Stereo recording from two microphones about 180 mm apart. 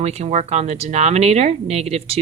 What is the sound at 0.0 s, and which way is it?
Speech, 35° right (ahead or behind).